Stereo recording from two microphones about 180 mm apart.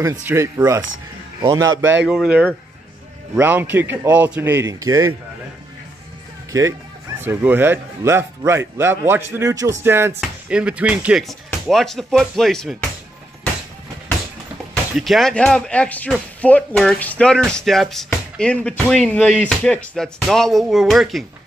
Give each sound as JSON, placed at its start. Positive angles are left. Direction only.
{"t": 0.0, "sound": "a man's voice", "side_deg": -15}
{"t": 7.2, "sound": "a man's voice", "side_deg": -10}
{"t": 14.7, "sound": "speech", "side_deg": 0}